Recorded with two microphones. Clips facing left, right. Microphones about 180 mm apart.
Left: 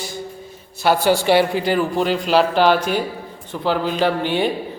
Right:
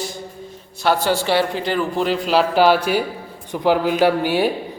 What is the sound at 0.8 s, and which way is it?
Speech, 10° left (ahead or behind).